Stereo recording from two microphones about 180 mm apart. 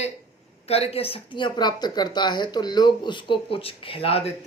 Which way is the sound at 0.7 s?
35° left (ahead or behind).